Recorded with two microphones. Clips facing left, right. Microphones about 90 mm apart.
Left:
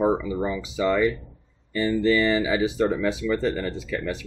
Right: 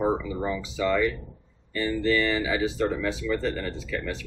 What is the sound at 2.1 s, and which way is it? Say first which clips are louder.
Speech: left 3 dB; 20° left (ahead or behind).